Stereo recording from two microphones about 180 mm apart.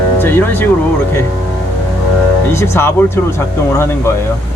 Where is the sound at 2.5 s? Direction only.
15° left (ahead or behind).